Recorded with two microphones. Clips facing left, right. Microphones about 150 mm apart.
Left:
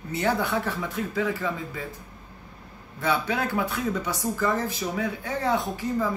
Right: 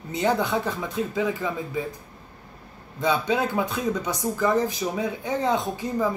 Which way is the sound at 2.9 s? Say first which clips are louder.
Right 3 dB; 20° right (ahead or behind).